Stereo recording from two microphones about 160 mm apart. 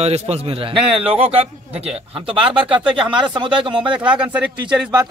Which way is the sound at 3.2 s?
30° right (ahead or behind).